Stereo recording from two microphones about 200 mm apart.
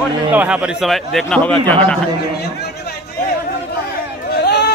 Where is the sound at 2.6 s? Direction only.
50° left (ahead or behind).